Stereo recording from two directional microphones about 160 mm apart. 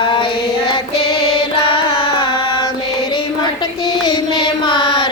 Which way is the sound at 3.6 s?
30° left (ahead or behind).